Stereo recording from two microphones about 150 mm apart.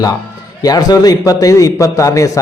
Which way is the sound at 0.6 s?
25° left (ahead or behind).